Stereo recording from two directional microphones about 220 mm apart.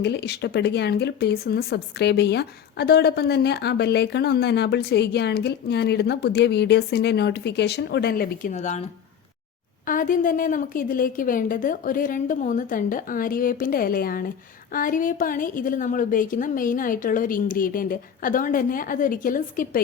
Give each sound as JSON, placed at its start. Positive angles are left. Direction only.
{"t": 0.0, "sound": "speech", "side_deg": 50}
{"t": 9.8, "sound": "a woman's voice", "side_deg": 40}